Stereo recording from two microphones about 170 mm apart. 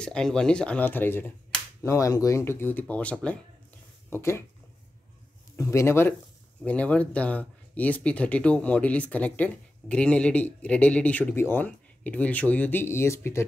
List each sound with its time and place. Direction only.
0.0 s speech: 5° left (ahead or behind)
5.6 s speech: 15° left (ahead or behind)